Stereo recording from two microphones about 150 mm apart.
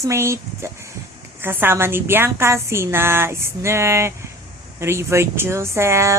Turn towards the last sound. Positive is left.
turn(degrees=-20)  # may be behind; listen again after turning